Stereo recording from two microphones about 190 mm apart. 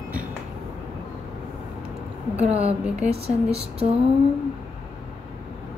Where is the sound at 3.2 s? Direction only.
35° right (ahead or behind).